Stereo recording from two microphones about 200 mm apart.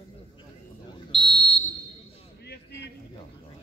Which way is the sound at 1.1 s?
Centre (ahead or behind).